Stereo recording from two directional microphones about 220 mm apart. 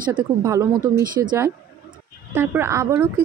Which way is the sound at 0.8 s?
40° right (ahead or behind).